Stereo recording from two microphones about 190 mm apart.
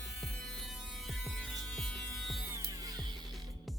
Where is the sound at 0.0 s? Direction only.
Centre (ahead or behind).